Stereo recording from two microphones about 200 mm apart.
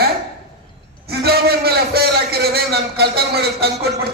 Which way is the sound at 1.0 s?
50° right (ahead or behind).